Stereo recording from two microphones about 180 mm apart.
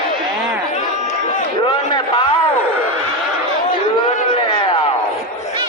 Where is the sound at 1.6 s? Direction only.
25° left (ahead or behind).